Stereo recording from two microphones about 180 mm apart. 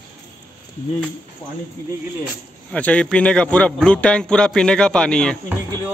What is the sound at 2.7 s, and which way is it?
A man's voice, 5° left (ahead or behind).